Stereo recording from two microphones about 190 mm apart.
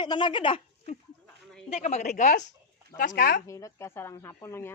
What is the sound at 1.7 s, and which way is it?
Speech, 35° left (ahead or behind).